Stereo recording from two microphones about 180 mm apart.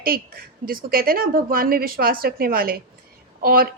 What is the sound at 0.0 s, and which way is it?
A woman's voice, 55° right (ahead or behind).